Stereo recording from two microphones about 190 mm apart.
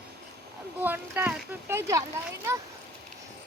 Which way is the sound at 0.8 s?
10° right (ahead or behind).